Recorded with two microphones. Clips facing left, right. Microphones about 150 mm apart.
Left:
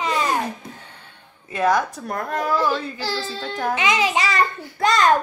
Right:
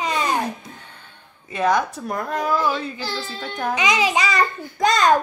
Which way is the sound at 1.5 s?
Centre (ahead or behind).